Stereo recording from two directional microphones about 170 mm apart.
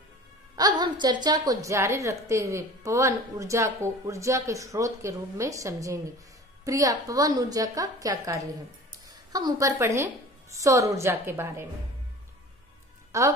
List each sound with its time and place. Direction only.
0.6 s a woman's voice: 25° right (ahead or behind)
13.1 s a woman's voice: 15° right (ahead or behind)